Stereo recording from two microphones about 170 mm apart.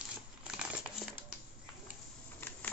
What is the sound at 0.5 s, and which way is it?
Crumpling, 5° right (ahead or behind).